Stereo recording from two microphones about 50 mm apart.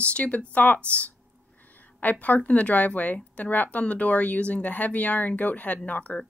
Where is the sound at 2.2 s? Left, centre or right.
Left.